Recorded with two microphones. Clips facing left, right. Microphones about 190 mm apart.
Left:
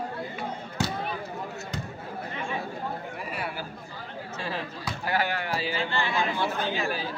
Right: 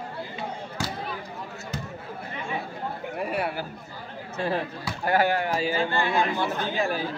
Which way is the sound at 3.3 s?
60° right (ahead or behind).